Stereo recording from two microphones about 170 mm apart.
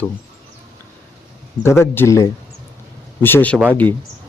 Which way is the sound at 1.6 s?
15° left (ahead or behind).